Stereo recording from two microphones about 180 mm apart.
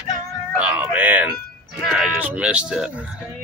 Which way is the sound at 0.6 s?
10° right (ahead or behind).